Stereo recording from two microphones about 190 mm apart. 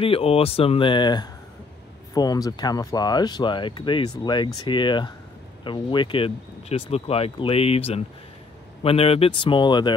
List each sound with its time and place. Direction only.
0.0 s speech: 30° left (ahead or behind)